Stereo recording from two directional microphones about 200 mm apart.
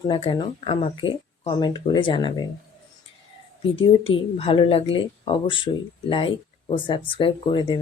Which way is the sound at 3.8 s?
25° left (ahead or behind).